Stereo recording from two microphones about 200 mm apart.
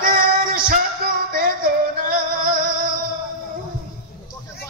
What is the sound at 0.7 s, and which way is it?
Music, 45° right (ahead or behind).